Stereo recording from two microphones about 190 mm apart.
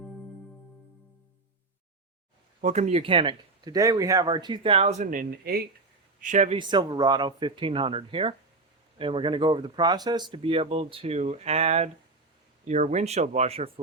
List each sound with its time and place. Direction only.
2.6 s speech: 40° right (ahead or behind)
5.5 s speech: 55° right (ahead or behind)
6.2 s speech: 40° right (ahead or behind)
6.6 s speech: 25° right (ahead or behind)